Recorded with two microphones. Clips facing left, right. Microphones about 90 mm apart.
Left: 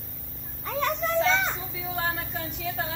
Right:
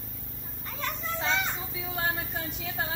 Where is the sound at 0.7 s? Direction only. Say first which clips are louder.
Left 8 dB; 85° left.